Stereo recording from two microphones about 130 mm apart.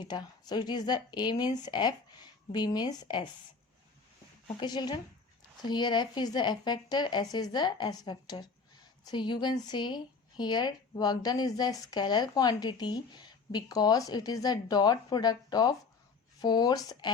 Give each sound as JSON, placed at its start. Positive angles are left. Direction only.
{"t": 0.0, "sound": "speech", "side_deg": 30}
{"t": 4.6, "sound": "speech", "side_deg": 35}